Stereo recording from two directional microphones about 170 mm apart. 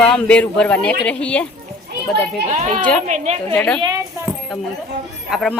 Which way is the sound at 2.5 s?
45° right (ahead or behind).